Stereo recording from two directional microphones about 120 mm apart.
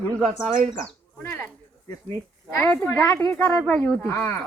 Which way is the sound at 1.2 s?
20° left (ahead or behind).